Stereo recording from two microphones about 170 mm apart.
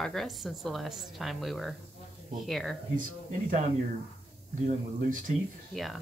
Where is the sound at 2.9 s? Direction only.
50° right (ahead or behind).